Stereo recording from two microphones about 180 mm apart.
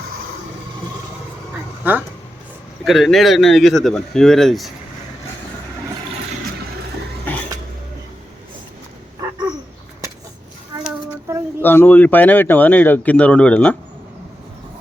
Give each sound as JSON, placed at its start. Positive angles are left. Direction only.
{"t": 1.8, "sound": "speech", "side_deg": -10}
{"t": 7.3, "sound": "a sound", "side_deg": 10}
{"t": 11.6, "sound": "speech", "side_deg": 10}